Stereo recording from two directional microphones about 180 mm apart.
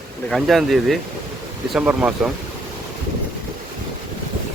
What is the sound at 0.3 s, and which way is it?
Speech, centre (ahead or behind).